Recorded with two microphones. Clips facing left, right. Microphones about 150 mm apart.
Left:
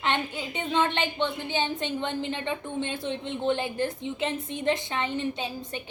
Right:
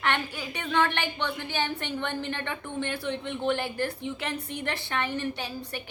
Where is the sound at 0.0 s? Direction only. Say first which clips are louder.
Left 1 dB; 20° left (ahead or behind).